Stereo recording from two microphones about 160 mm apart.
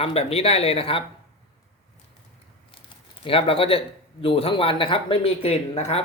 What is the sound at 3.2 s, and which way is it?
A man's voice, 35° left (ahead or behind).